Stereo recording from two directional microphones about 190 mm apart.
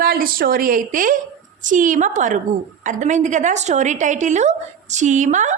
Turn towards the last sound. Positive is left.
turn(degrees=-40)  # may be behind; listen again after turning